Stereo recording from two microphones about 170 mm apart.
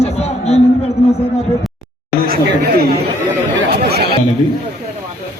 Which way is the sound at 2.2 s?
60° right (ahead or behind).